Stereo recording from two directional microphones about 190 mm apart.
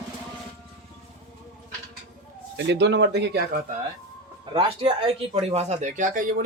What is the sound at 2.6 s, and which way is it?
Speech, 65° right (ahead or behind).